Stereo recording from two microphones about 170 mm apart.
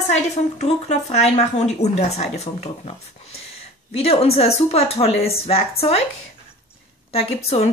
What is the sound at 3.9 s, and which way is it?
Speech, 35° left (ahead or behind).